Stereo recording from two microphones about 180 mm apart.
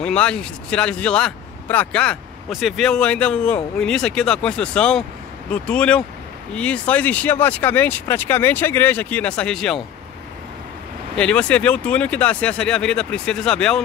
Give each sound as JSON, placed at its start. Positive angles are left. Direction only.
{"t": 0.0, "sound": "speech", "side_deg": 5}
{"t": 11.1, "sound": "speech", "side_deg": 5}